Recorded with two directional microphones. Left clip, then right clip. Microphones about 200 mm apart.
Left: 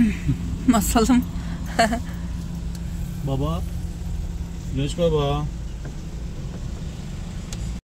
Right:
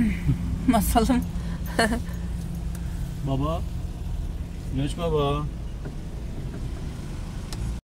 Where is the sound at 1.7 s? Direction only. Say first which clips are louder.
Left 4 dB; 10° right (ahead or behind).